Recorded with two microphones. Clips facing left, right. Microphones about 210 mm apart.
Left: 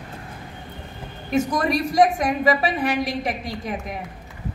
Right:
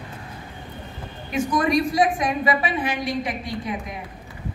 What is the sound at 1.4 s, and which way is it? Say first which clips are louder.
A woman's voice: right 1 dB; 40° left (ahead or behind).